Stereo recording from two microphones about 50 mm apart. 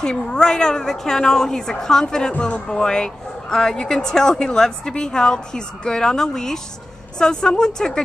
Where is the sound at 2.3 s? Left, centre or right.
Left.